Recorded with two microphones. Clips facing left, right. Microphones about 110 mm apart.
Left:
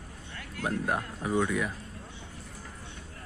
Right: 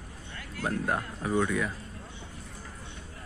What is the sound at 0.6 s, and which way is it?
Speech, 10° left (ahead or behind).